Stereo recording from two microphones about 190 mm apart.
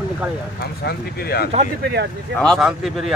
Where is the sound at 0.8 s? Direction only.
55° left (ahead or behind).